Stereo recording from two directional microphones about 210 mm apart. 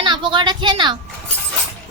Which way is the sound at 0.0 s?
20° right (ahead or behind).